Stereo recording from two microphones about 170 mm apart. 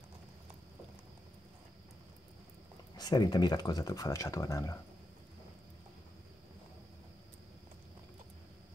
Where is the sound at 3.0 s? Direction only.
25° left (ahead or behind).